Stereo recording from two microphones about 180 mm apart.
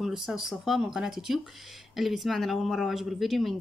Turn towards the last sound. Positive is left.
turn(degrees=0)  # may be behind; listen again after turning